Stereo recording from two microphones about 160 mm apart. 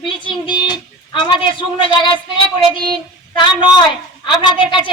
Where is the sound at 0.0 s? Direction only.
30° left (ahead or behind).